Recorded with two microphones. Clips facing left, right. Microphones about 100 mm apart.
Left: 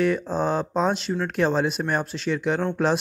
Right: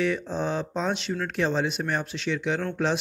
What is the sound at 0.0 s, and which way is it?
Speech, 45° left (ahead or behind).